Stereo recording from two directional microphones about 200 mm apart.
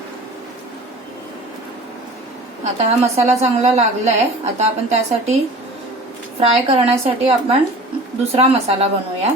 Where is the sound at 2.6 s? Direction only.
35° right (ahead or behind).